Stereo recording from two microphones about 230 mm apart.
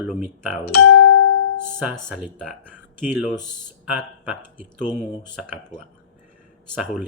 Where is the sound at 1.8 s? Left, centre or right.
Centre.